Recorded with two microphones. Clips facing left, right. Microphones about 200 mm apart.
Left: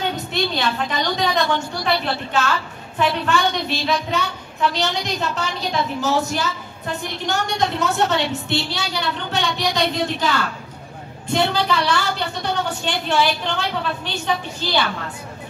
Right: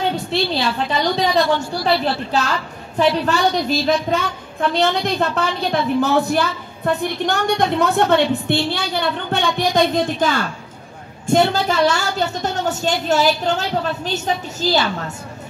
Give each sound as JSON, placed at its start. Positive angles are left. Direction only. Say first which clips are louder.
{"t": 0.1, "sound": "a woman's voice", "louder": "right 3 dB", "side_deg": -30}
{"t": 4.6, "sound": "a woman's voice", "louder": "right 4 dB", "side_deg": -55}